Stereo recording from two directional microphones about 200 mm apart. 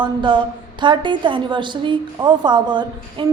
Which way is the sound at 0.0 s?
25° right (ahead or behind).